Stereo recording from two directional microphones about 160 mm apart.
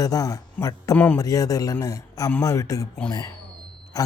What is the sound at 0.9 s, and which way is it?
Speech, 10° left (ahead or behind).